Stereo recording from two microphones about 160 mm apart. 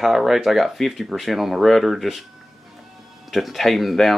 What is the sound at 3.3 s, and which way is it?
Speech, centre (ahead or behind).